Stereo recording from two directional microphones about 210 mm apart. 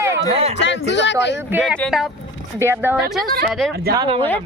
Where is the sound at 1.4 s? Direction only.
10° right (ahead or behind).